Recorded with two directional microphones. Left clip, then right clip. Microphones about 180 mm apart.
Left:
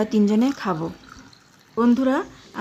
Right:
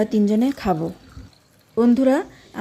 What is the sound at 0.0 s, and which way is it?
Speech, 10° right (ahead or behind).